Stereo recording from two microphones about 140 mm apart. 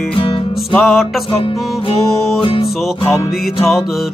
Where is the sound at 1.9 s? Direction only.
40° left (ahead or behind).